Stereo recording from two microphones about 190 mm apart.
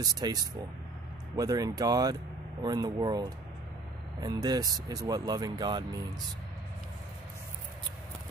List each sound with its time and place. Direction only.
0.0 s speech: 20° right (ahead or behind)